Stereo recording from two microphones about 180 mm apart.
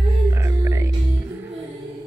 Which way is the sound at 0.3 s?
15° right (ahead or behind).